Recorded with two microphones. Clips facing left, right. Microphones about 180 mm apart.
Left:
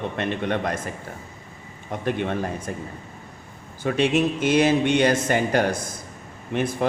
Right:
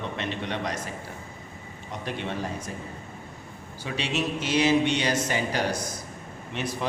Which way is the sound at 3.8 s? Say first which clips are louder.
Left 9 dB; 50° left (ahead or behind).